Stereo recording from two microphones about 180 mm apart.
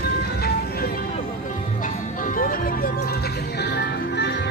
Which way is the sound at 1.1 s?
45° left (ahead or behind).